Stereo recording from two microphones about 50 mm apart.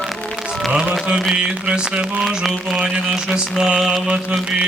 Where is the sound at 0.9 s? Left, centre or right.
Centre.